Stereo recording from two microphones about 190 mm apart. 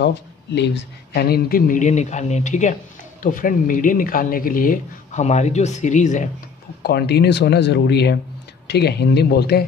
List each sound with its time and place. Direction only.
0.0 s speech: 65° left (ahead or behind); by 6.2 s 40° left (ahead or behind)
6.8 s speech: 55° left (ahead or behind)